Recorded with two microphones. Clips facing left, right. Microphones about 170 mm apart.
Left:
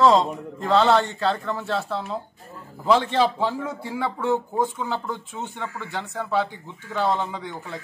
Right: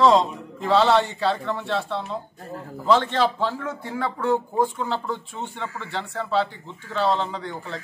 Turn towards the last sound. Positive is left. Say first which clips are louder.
# right 1 dB
turn(degrees=10)  # may be behind; listen again after turning